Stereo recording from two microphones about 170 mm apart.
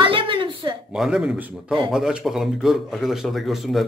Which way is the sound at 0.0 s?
30° right (ahead or behind).